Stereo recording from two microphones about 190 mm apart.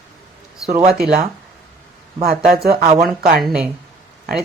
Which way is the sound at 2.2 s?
50° right (ahead or behind).